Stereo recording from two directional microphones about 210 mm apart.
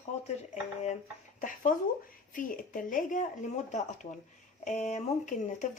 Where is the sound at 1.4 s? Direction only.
35° left (ahead or behind).